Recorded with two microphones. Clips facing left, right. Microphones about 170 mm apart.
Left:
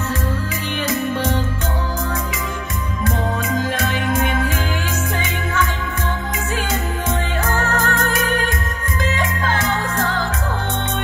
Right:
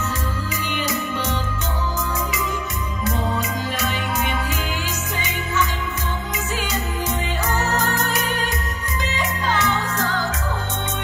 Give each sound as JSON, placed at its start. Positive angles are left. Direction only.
{"t": 7.4, "sound": "music", "side_deg": 50}